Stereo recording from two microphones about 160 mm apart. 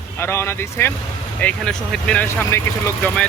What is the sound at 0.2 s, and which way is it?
Speech, 15° left (ahead or behind).